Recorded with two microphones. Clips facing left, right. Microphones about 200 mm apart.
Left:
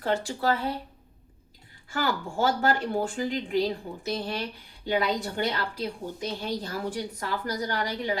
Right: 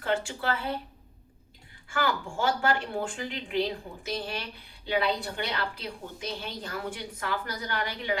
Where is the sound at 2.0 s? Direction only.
40° left (ahead or behind).